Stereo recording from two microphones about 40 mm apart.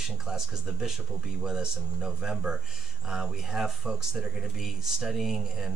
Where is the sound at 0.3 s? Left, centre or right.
Centre.